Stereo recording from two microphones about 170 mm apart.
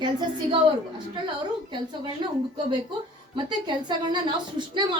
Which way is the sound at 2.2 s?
30° right (ahead or behind).